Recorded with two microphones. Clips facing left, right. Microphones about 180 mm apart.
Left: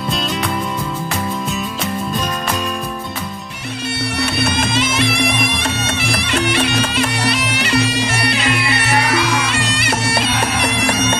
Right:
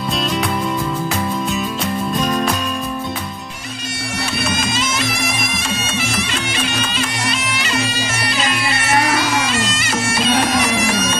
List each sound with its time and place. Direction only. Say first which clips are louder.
4.2 s music: left 2 dB; 60° left (ahead or behind)